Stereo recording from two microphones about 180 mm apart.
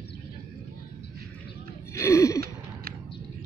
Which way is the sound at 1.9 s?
15° left (ahead or behind).